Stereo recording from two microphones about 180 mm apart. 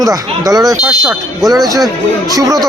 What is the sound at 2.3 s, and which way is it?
Speech, 20° right (ahead or behind).